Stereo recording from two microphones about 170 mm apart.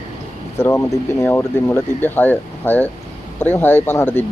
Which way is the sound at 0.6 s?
15° left (ahead or behind).